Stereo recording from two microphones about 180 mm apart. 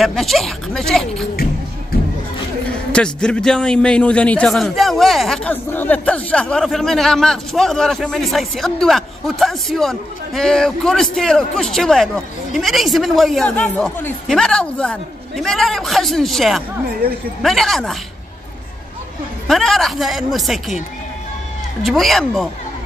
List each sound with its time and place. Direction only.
0.0 s a man's voice: centre (ahead or behind)
1.3 s music: 55° left (ahead or behind)
2.9 s a man's voice: 5° left (ahead or behind)
19.4 s a man's voice: centre (ahead or behind)
21.8 s a man's voice: centre (ahead or behind)